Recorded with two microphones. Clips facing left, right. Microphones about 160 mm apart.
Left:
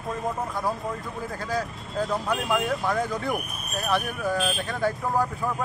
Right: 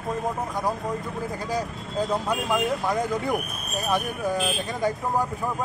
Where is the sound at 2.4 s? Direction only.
Centre (ahead or behind).